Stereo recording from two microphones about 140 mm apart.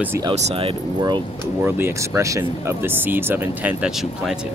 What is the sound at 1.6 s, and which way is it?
Speech, 15° right (ahead or behind).